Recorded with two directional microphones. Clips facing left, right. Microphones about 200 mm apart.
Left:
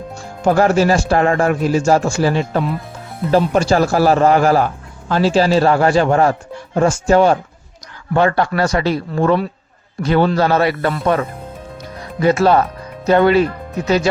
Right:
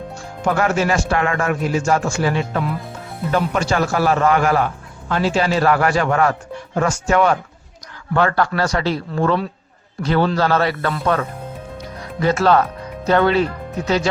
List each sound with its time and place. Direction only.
0.4 s a man's voice: 35° left (ahead or behind); by 14.1 s 5° left (ahead or behind)